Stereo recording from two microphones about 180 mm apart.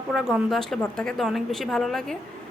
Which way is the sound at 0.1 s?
Centre (ahead or behind).